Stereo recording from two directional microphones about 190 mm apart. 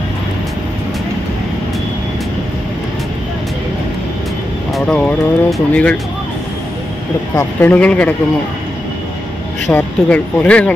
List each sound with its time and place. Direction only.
4.7 s speech: 5° left (ahead or behind)
7.3 s speech: 10° left (ahead or behind)
9.7 s speech: 5° left (ahead or behind)